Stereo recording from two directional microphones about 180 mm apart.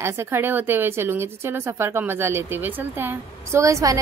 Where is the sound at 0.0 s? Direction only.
10° right (ahead or behind).